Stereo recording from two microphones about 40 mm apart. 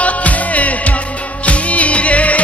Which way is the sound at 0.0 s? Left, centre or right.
Left.